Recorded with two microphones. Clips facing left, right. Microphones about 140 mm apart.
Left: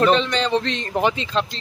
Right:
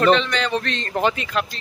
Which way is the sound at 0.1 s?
35° left (ahead or behind).